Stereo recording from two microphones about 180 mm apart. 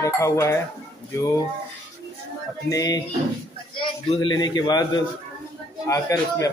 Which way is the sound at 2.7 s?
20° left (ahead or behind).